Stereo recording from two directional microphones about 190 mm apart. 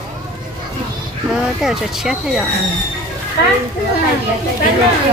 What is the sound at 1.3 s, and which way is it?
Speech, 5° right (ahead or behind).